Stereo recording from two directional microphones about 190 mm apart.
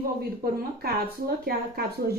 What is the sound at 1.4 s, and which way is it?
Speech, 55° right (ahead or behind).